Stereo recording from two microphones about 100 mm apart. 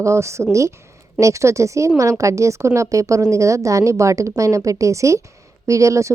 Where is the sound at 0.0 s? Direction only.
30° right (ahead or behind).